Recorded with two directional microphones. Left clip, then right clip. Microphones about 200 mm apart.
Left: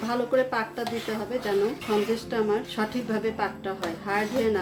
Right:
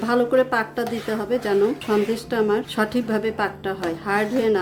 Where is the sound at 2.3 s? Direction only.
35° right (ahead or behind).